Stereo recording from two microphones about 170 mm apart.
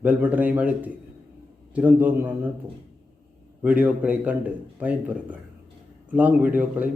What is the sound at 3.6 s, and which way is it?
A man's voice, 10° right (ahead or behind).